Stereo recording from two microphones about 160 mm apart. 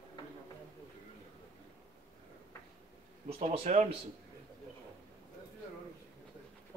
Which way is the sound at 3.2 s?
40° right (ahead or behind).